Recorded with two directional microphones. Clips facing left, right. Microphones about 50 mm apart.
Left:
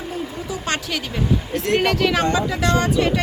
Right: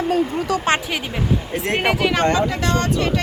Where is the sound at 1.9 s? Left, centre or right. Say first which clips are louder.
Even; centre.